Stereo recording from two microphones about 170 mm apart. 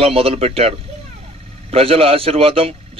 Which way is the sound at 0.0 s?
35° right (ahead or behind).